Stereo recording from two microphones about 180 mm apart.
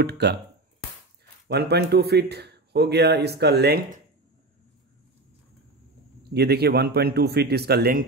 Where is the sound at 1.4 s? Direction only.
65° right (ahead or behind).